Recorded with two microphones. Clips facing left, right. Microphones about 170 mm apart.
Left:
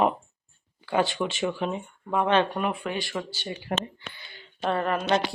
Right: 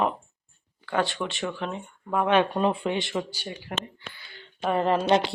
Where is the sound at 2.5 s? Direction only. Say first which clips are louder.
Right 4 dB; 25° right (ahead or behind).